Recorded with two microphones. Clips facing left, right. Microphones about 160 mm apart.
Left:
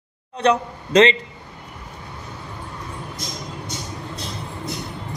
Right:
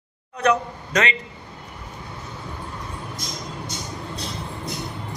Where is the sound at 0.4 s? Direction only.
30° left (ahead or behind).